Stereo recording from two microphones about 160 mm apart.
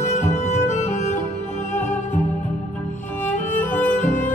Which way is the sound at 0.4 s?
45° left (ahead or behind).